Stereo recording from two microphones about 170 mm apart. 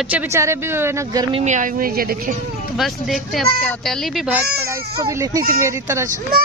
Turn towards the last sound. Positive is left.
turn(degrees=-15)  # may be behind; listen again after turning